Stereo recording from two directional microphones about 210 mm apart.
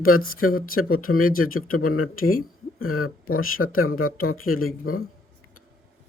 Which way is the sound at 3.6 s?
80° left.